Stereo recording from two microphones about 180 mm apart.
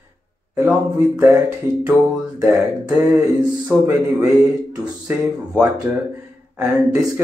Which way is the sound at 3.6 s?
20° right (ahead or behind).